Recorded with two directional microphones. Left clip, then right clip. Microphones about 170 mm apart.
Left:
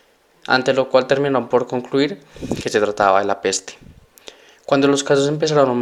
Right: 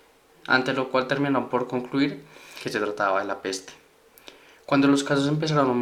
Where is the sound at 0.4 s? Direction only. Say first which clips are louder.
Left 6 dB; 35° left (ahead or behind).